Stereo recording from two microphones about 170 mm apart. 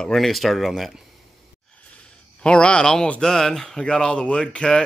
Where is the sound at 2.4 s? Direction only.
5° left (ahead or behind).